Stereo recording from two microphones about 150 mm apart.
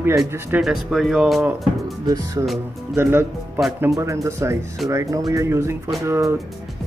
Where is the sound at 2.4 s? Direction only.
20° right (ahead or behind).